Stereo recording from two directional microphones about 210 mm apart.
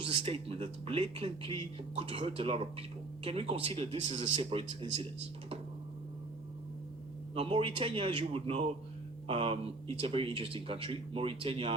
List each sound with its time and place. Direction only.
0.1 s speech: 25° right (ahead or behind)
7.3 s speech: 25° right (ahead or behind)